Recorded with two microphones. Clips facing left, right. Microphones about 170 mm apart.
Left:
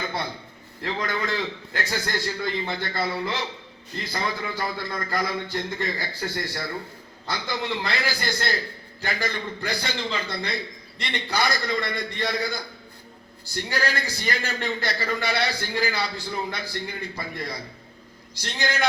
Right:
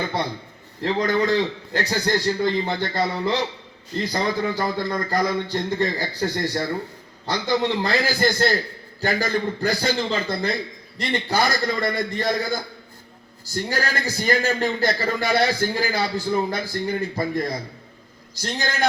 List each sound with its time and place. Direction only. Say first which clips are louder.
0.8 s a man's voice: right 7 dB; 40° right (ahead or behind)